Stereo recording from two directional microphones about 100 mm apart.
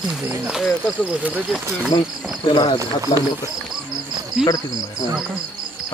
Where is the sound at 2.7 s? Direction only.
35° right (ahead or behind).